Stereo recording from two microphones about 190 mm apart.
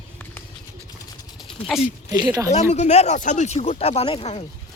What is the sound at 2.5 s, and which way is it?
Speech, 35° left (ahead or behind).